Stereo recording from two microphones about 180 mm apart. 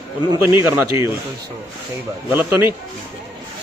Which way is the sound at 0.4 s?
10° right (ahead or behind).